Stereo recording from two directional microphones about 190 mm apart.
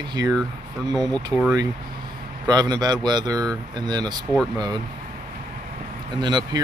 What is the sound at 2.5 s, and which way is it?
Speech, 20° right (ahead or behind).